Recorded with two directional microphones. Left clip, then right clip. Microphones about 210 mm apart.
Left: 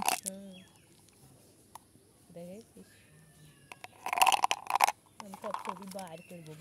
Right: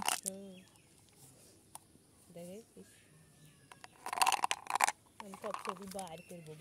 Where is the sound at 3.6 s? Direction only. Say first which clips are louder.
Left 6 dB; 10° left (ahead or behind).